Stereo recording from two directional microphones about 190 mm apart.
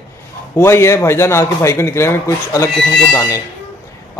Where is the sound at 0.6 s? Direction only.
15° left (ahead or behind).